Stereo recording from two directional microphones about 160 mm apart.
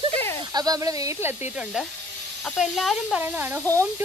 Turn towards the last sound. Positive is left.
turn(degrees=-20)  # may be behind; listen again after turning